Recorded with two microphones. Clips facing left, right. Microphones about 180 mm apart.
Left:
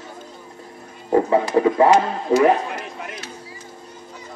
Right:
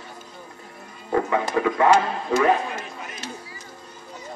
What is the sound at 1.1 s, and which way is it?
Speech, 30° left (ahead or behind).